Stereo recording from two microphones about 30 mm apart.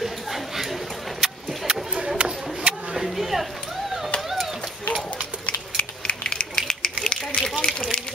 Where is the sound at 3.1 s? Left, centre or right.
Centre.